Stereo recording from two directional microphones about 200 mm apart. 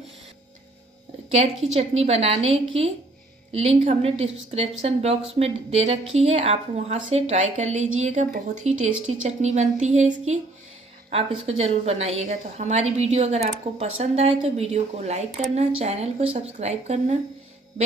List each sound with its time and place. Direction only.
1.7 s a woman's voice: 30° right (ahead or behind)